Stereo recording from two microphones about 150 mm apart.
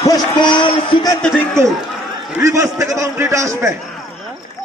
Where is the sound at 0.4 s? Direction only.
30° left (ahead or behind).